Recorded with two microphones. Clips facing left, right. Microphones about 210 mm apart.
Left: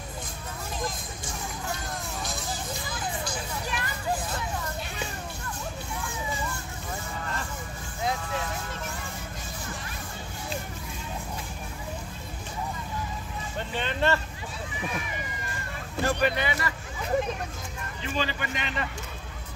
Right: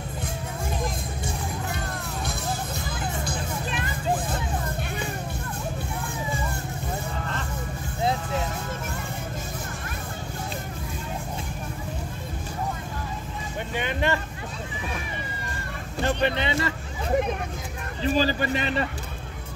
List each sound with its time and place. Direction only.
2.2 s music: 60° right (ahead or behind)
3.6 s hubbub: 20° right (ahead or behind)
13.7 s vehicle: 15° right (ahead or behind)
16.1 s vehicle: 25° right (ahead or behind)
18.0 s a sound: 35° right (ahead or behind)